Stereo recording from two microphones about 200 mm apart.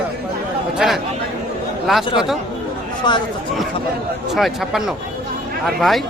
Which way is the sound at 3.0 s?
20° left (ahead or behind).